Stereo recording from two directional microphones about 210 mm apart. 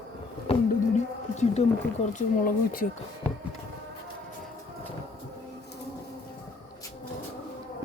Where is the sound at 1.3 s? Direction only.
35° left (ahead or behind).